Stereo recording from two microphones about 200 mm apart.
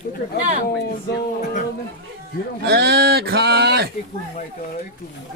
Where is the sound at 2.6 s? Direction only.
55° right (ahead or behind).